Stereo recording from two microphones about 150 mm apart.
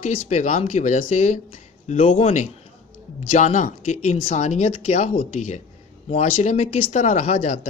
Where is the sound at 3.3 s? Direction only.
55° left (ahead or behind).